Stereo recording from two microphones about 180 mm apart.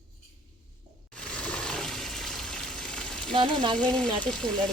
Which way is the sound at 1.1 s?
5° left (ahead or behind).